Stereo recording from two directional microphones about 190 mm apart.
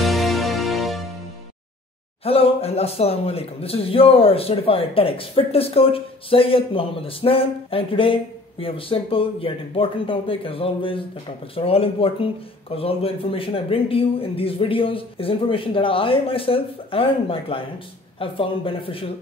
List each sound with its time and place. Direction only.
0.0 s music: centre (ahead or behind)
2.2 s a man's voice: 30° left (ahead or behind)